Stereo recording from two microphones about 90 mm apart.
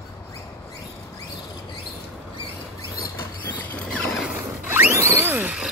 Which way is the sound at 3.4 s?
20° left (ahead or behind).